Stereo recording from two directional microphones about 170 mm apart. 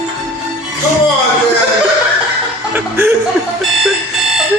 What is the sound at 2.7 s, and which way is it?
Chuckle, 10° right (ahead or behind).